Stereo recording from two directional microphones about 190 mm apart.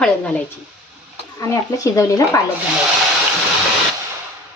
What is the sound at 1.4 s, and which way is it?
Speech, 15° left (ahead or behind).